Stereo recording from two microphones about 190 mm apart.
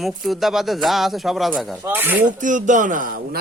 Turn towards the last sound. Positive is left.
turn(degrees=-50)  # may be behind; listen again after turning